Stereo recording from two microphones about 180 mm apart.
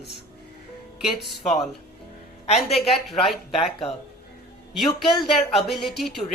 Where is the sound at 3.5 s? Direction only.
35° left (ahead or behind).